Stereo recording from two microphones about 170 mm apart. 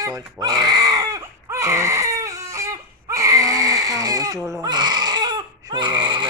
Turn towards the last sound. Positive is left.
turn(degrees=-25)  # may be behind; listen again after turning